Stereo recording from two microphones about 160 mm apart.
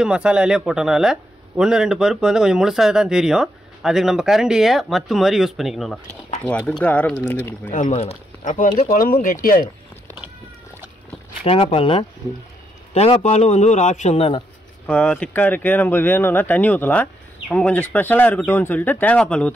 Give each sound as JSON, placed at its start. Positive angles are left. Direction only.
{"t": 0.0, "sound": "speech", "side_deg": -5}
{"t": 6.8, "sound": "speech", "side_deg": 10}
{"t": 7.7, "sound": "speech", "side_deg": 45}
{"t": 11.4, "sound": "a man's voice", "side_deg": 35}
{"t": 14.9, "sound": "speech", "side_deg": 5}